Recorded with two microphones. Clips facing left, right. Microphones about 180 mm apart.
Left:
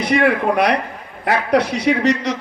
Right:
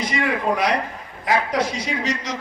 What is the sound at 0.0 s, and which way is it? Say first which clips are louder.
A man's voice: left 7 dB; 65° left (ahead or behind).